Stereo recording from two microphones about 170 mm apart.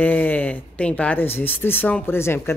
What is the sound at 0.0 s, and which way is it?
Speech, 10° left (ahead or behind).